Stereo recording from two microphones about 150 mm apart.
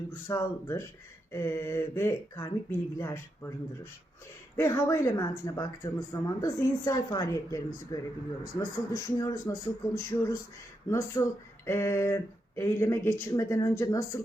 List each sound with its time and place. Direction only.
0.3 s speech: 20° left (ahead or behind)
4.5 s speech: 20° left (ahead or behind)